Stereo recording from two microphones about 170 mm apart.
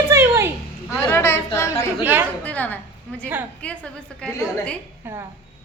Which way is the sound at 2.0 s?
10° right (ahead or behind).